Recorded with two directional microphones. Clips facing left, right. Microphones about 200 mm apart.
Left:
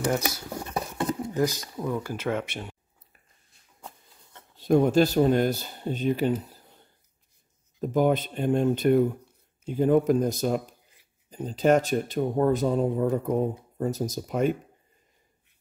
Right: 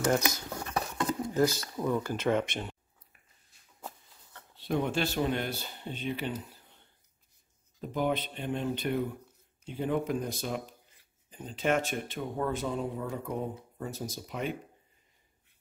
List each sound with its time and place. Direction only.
0.5 s a sound: 20° left (ahead or behind)
1.2 s speech: 15° left (ahead or behind)
4.6 s speech: 45° left (ahead or behind)